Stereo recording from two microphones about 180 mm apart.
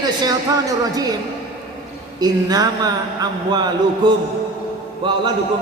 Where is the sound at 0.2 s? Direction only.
20° right (ahead or behind).